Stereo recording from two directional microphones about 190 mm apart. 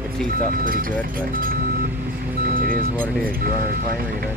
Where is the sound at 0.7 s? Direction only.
50° right (ahead or behind).